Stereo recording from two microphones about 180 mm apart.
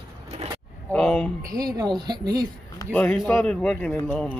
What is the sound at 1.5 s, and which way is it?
Speech, 20° right (ahead or behind).